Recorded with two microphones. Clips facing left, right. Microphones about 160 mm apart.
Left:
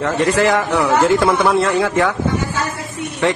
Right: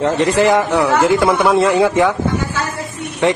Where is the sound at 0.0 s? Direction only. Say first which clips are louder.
Right 2 dB; 20° right (ahead or behind).